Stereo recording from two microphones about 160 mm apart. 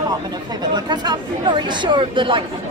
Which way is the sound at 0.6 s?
25° right (ahead or behind).